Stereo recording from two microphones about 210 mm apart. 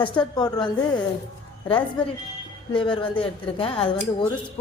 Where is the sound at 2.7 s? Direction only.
25° left (ahead or behind).